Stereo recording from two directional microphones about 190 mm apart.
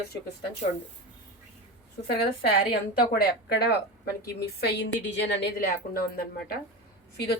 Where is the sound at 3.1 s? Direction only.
60° left (ahead or behind).